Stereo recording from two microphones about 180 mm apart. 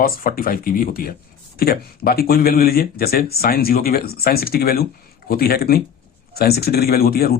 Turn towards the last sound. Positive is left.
turn(degrees=55)  # may be behind; listen again after turning